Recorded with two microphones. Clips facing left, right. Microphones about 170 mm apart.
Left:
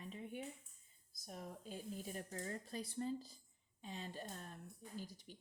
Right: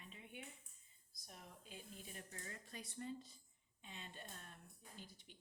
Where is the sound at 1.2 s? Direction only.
40° left (ahead or behind).